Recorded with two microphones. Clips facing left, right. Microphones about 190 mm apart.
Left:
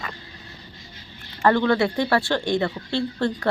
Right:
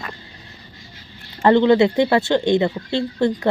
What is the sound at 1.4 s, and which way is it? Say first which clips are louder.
Speech: right 6 dB; 20° right (ahead or behind).